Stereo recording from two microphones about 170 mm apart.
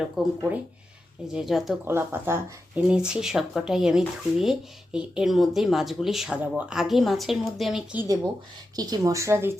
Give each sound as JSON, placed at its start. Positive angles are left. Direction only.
{"t": 0.2, "sound": "speech", "side_deg": -5}
{"t": 1.9, "sound": "speech", "side_deg": -15}
{"t": 8.7, "sound": "speech", "side_deg": -20}